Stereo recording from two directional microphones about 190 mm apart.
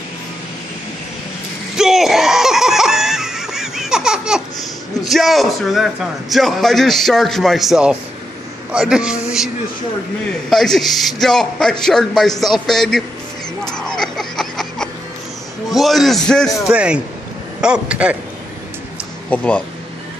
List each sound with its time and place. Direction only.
1.8 s a sound: centre (ahead or behind)
5.0 s a man's voice: centre (ahead or behind)
10.5 s a man's voice: centre (ahead or behind)
13.7 s a sound: 5° left (ahead or behind)
15.7 s a man's voice: centre (ahead or behind)
19.3 s speech: 5° left (ahead or behind)